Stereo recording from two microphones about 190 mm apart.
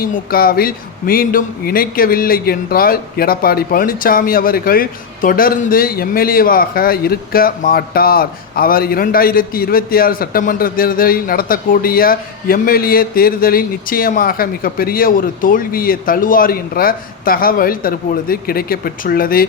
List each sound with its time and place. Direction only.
0.0 s speech: 50° left (ahead or behind)